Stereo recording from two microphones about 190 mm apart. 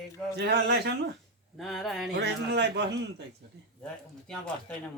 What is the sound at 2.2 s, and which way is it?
Speech, 60° right (ahead or behind).